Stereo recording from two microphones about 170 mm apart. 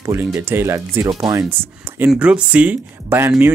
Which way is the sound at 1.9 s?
10° right (ahead or behind).